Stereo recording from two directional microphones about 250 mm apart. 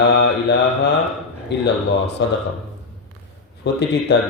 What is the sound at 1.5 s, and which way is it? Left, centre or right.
Speech, left.